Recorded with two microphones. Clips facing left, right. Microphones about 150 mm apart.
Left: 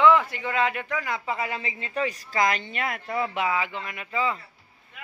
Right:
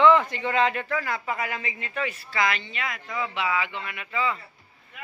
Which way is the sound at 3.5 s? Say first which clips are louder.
Even; 35° left (ahead or behind).